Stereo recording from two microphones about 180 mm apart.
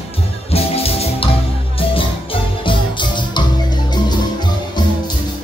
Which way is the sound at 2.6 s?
25° left (ahead or behind).